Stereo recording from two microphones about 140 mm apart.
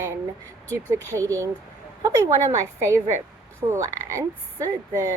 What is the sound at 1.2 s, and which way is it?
A woman's voice, 20° right (ahead or behind).